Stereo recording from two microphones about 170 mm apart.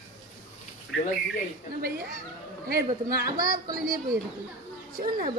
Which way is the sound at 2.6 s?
60° right (ahead or behind).